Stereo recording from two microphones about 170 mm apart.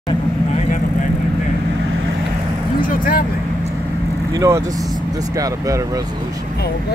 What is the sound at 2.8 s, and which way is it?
Speech, 55° left (ahead or behind).